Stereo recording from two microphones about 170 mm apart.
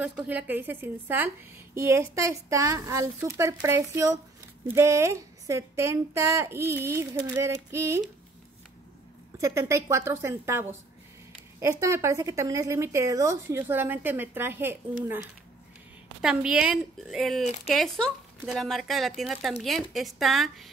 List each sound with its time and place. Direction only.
0.0 s speech: 5° right (ahead or behind)
9.4 s speech: 15° right (ahead or behind); by 20.7 s centre (ahead or behind)